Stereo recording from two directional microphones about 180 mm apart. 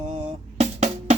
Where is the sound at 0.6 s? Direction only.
40° right (ahead or behind).